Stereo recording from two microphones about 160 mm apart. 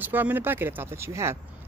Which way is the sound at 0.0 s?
10° right (ahead or behind).